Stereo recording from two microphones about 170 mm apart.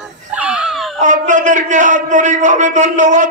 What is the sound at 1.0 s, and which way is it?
A man's voice, 45° right (ahead or behind).